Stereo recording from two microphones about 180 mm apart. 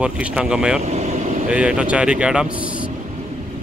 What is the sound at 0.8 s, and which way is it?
Vehicle, 35° right (ahead or behind).